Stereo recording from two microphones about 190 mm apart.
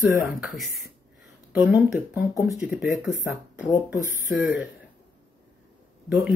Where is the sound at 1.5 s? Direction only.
10° right (ahead or behind).